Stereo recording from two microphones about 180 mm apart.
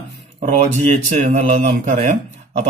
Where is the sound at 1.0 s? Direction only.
40° right (ahead or behind).